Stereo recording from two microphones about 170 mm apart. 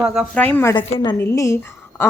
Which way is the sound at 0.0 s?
5° right (ahead or behind).